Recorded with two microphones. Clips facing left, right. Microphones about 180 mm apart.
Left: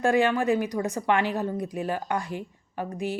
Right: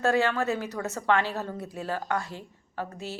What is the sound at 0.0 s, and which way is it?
A woman's voice, 15° left (ahead or behind).